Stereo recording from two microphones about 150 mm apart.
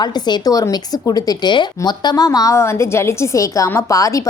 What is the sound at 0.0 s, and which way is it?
Speech, 25° left (ahead or behind).